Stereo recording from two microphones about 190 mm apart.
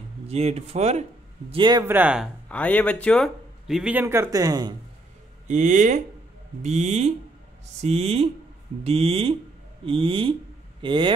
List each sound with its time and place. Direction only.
0.3 s speech: 35° right (ahead or behind)
1.5 s speech: 25° right (ahead or behind)
1.9 s speech: 10° right (ahead or behind)
2.5 s speech: 10° left (ahead or behind); by 4.7 s 20° right (ahead or behind)
5.5 s speech: 40° right (ahead or behind)